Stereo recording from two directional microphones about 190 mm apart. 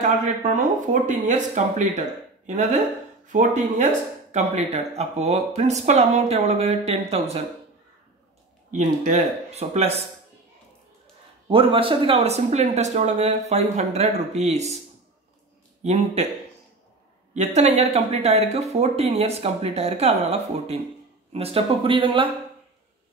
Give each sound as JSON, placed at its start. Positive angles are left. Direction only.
{"t": 0.6, "sound": "speech", "side_deg": -40}
{"t": 8.7, "sound": "speech", "side_deg": -40}
{"t": 11.4, "sound": "speech", "side_deg": -25}
{"t": 15.8, "sound": "speech", "side_deg": -35}
{"t": 17.3, "sound": "speech", "side_deg": -35}